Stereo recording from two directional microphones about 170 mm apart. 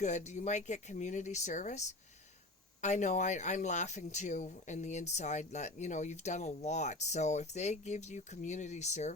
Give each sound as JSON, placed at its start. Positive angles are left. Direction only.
{"t": 0.0, "sound": "speech", "side_deg": 45}